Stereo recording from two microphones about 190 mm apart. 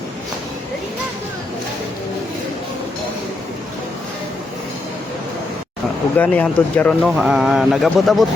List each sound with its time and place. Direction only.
6.1 s speech: 10° left (ahead or behind)